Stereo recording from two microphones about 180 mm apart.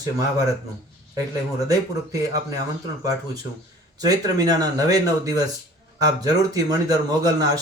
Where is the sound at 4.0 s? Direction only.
20° right (ahead or behind).